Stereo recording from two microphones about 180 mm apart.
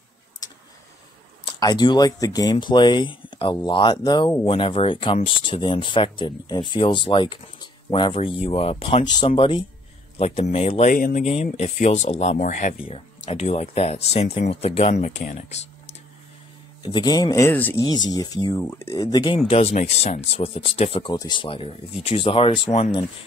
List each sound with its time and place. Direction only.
1.4 s speech: 25° left (ahead or behind)
10.9 s speech: 50° left (ahead or behind)
16.8 s speech: 25° left (ahead or behind)